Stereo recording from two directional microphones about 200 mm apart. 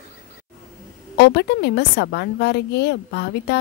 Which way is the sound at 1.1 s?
55° left (ahead or behind).